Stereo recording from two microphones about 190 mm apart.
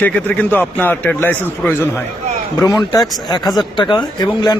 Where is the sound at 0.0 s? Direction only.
10° left (ahead or behind).